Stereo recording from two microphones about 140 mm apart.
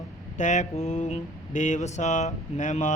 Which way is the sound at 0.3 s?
60° left (ahead or behind).